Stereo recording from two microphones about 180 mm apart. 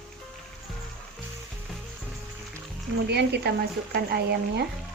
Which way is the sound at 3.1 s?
65° right (ahead or behind).